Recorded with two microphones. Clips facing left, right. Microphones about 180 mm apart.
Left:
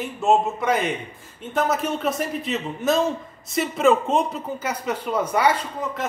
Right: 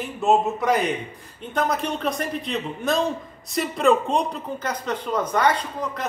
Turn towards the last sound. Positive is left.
turn(degrees=5)  # may be behind; listen again after turning